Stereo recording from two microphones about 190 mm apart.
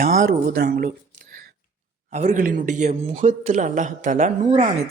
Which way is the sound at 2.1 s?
40° right (ahead or behind).